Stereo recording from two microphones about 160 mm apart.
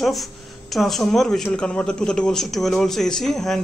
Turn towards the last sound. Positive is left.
turn(degrees=0)  # may be behind; listen again after turning